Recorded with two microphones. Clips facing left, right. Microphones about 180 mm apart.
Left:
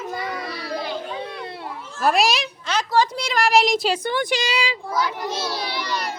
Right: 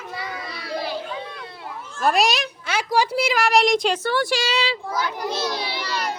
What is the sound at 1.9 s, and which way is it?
A child's voice, centre (ahead or behind).